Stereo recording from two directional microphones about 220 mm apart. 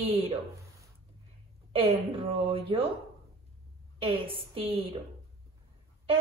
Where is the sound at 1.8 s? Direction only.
25° right (ahead or behind).